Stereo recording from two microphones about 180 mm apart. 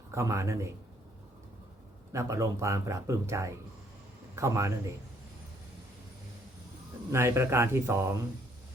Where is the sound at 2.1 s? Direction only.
15° right (ahead or behind).